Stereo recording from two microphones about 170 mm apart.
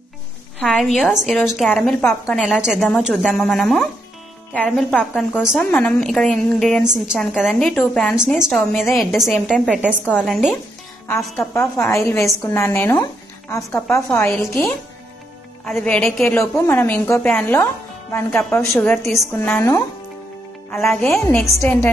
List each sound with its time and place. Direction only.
0.6 s a woman's voice: centre (ahead or behind)
2.3 s a woman's voice: 5° right (ahead or behind)
10.0 s a woman's voice: 5° left (ahead or behind)
11.5 s speech: 15° left (ahead or behind)
15.6 s a woman's voice: 5° left (ahead or behind)
16.3 s a woman's voice: 15° left (ahead or behind)
20.9 s a woman's voice: centre (ahead or behind)
21.2 s speech: 15° left (ahead or behind)